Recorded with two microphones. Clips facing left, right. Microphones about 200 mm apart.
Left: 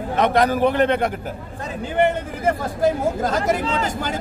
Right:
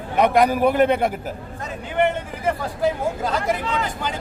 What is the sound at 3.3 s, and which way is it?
Speech, 45° left (ahead or behind).